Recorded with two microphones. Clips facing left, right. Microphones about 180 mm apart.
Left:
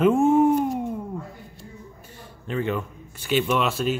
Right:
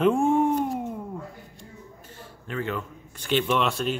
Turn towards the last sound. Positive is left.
turn(degrees=5)  # may be behind; listen again after turning